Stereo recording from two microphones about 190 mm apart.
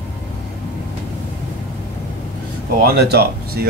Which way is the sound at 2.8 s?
55° right (ahead or behind).